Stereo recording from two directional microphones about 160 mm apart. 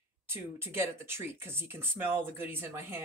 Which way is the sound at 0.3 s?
15° right (ahead or behind).